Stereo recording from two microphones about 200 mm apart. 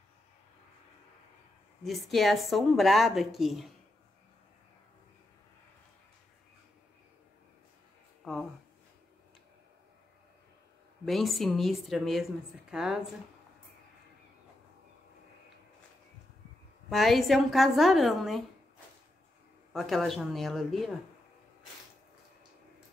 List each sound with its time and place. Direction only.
1.8 s a woman's voice: centre (ahead or behind)
8.2 s a sound: centre (ahead or behind)
11.1 s a woman's voice: centre (ahead or behind)
16.9 s a woman's voice: centre (ahead or behind)
19.7 s a woman's voice: centre (ahead or behind)